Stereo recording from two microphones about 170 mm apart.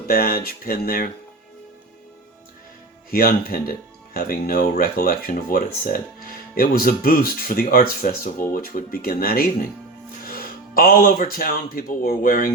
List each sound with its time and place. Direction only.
0.1 s speech: 60° left (ahead or behind)
3.1 s speech: 60° left (ahead or behind)